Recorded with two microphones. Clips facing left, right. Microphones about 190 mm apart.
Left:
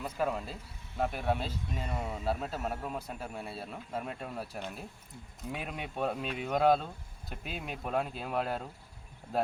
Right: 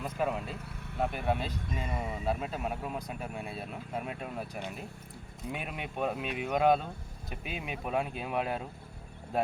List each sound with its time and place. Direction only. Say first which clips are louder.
0.0 s speech: right 1 dB; 5° right (ahead or behind)
0.5 s speech: right 5 dB; 65° right (ahead or behind)
1.0 s speech: even; centre (ahead or behind)
3.5 s speech: right 1 dB; 15° right (ahead or behind)